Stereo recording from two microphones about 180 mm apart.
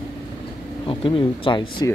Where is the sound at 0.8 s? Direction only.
30° left (ahead or behind).